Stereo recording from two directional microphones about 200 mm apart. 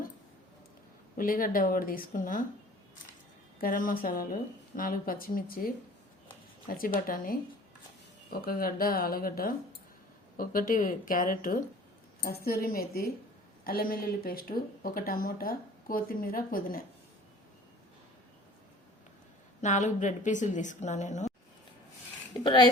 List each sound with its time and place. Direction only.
1.1 s speech: 45° left (ahead or behind)
3.6 s speech: 40° left (ahead or behind)
19.6 s a woman's voice: 35° left (ahead or behind)